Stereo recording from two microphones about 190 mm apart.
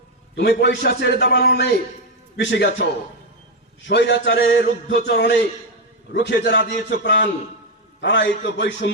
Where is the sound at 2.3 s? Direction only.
70° left (ahead or behind).